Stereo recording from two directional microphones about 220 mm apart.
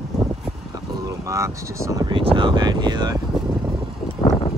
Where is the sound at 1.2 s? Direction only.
15° right (ahead or behind).